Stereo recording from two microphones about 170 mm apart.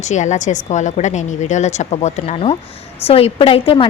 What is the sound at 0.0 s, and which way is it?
A woman's voice, 45° left (ahead or behind).